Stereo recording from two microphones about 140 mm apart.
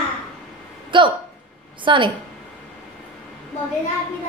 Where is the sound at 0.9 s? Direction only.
35° right (ahead or behind).